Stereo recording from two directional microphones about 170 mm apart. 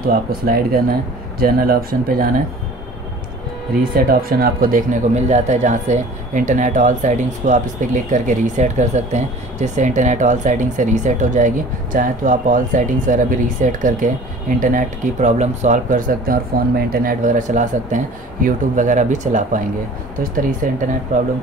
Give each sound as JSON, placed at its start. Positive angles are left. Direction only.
{"t": 0.0, "sound": "speech", "side_deg": -60}
{"t": 3.9, "sound": "speech", "side_deg": -60}